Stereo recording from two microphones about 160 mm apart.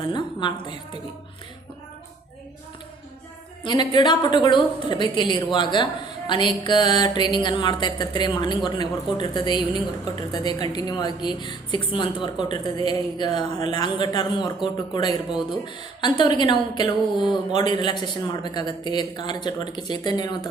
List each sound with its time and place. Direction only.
0.0 s a woman's voice: 30° left (ahead or behind)
3.6 s a woman's voice: 25° left (ahead or behind)